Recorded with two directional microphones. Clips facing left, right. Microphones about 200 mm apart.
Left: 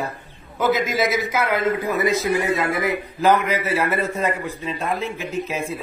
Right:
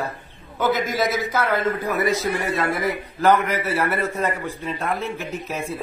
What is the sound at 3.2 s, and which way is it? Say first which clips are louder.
Speech: even; 10° left (ahead or behind).